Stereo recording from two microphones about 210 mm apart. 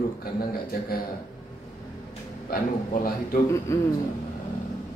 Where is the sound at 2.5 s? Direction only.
40° left (ahead or behind).